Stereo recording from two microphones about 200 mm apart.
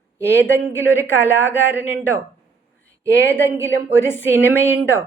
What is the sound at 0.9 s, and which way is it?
Speech, 10° left (ahead or behind).